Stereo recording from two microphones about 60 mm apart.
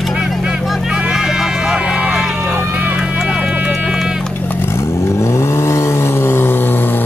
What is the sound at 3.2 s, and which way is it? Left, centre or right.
Music, centre.